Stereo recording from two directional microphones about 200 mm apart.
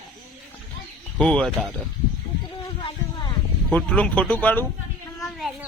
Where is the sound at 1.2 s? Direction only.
5° left (ahead or behind).